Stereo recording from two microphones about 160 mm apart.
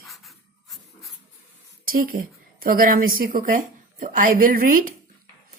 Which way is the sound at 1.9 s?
65° right (ahead or behind).